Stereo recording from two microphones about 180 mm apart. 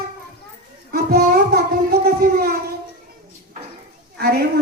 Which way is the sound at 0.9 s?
65° right (ahead or behind).